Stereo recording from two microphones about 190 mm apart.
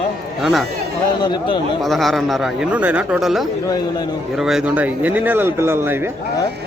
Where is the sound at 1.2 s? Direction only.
20° left (ahead or behind).